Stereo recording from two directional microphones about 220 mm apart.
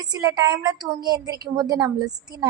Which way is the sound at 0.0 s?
20° right (ahead or behind).